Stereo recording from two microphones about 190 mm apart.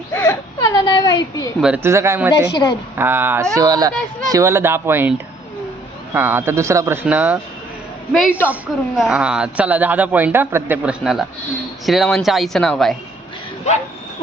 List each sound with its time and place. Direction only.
0.1 s whimper: 15° left (ahead or behind)
1.6 s speech: 10° right (ahead or behind)
2.5 s a woman's voice: 25° left (ahead or behind)
3.0 s speech: 10° right (ahead or behind)
6.1 s speech: 10° right (ahead or behind)